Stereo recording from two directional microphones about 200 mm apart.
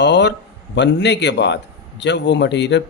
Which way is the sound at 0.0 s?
60° left (ahead or behind).